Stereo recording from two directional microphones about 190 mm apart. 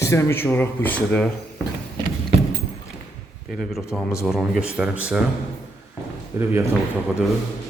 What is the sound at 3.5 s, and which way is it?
A man's voice, centre (ahead or behind).